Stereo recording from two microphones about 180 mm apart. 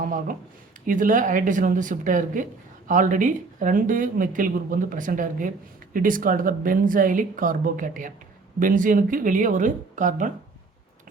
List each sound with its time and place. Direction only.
0.0 s speech: 50° right (ahead or behind)